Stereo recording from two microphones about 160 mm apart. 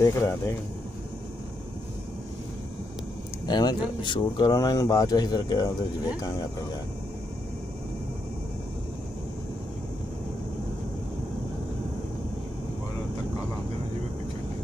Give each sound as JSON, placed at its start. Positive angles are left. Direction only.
{"t": 0.0, "sound": "speech", "side_deg": 15}
{"t": 3.4, "sound": "speech", "side_deg": 25}